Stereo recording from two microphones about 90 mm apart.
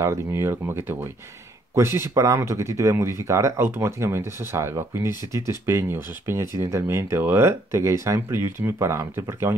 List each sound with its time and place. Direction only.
0.0 s speech: 30° right (ahead or behind)